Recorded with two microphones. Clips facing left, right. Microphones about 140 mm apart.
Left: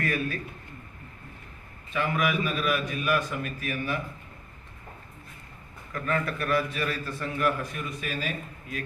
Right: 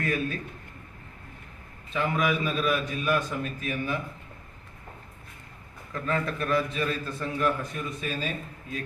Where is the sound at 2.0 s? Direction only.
20° right (ahead or behind).